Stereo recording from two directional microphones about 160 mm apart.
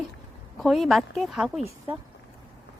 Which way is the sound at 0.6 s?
Centre (ahead or behind).